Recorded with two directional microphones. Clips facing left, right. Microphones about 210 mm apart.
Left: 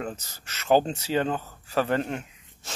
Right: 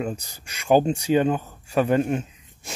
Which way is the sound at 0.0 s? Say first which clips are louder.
Right 5 dB; 15° right (ahead or behind).